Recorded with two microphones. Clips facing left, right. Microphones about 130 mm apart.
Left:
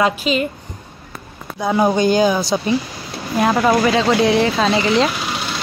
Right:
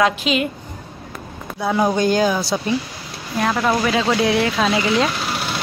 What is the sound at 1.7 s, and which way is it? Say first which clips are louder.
Speech: left 2 dB; 5° left (ahead or behind).